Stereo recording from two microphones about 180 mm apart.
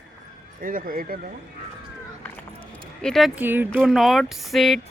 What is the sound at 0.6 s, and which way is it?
Speech, 50° right (ahead or behind).